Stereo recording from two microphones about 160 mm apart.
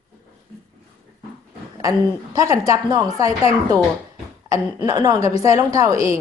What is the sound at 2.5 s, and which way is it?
Speech, 20° right (ahead or behind).